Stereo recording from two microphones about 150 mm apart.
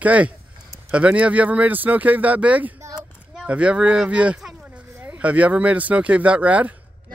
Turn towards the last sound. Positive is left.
turn(degrees=-10)  # may be behind; listen again after turning